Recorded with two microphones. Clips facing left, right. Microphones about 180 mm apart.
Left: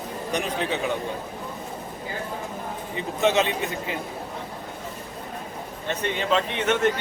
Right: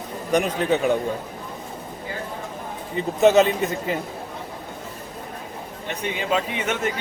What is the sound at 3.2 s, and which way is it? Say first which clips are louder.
Speech: right 6 dB; 45° right (ahead or behind).